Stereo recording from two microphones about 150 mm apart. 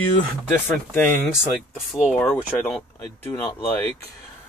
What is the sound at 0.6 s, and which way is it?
Speech, 15° left (ahead or behind).